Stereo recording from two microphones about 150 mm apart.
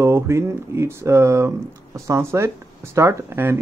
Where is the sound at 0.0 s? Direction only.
20° right (ahead or behind).